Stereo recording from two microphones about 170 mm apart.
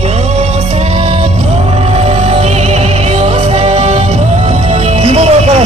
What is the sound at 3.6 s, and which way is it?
Music, 40° right (ahead or behind).